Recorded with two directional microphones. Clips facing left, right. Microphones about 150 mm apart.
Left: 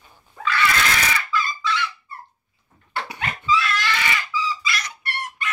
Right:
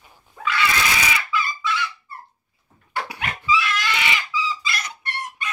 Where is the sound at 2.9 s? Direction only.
10° right (ahead or behind).